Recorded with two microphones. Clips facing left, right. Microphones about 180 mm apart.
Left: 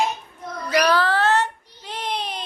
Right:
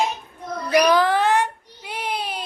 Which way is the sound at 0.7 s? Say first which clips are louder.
Right 3 dB; 15° right (ahead or behind).